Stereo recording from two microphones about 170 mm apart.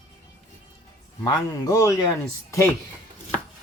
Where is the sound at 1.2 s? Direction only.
20° left (ahead or behind).